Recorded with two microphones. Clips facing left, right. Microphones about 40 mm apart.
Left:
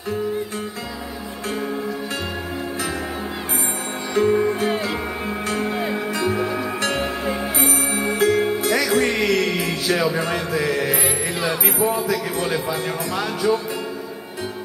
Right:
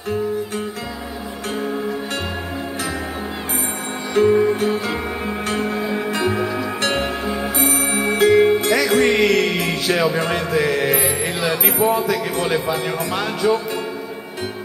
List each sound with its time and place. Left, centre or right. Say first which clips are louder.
4.3 s music: right 3 dB; centre
6.3 s music: right 1 dB; centre
7.9 s music: right 5 dB; right
11.6 s speech: right 5 dB; right
13.4 s music: right 2 dB; right